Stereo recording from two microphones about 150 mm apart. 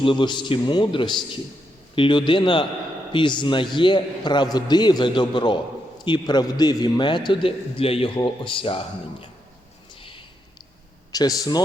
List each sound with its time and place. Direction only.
0.0 s a man's voice: 35° left (ahead or behind)
10.0 s a sound: 35° left (ahead or behind)
11.1 s a man's voice: 25° left (ahead or behind)